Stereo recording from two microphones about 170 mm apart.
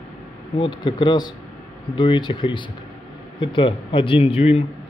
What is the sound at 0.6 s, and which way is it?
A man's voice, 30° left (ahead or behind).